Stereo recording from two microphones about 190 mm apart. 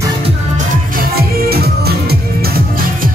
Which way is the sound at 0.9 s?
55° right (ahead or behind).